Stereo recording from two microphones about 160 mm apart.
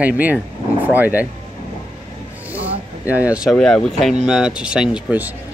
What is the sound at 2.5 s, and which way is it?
Speech, 10° right (ahead or behind).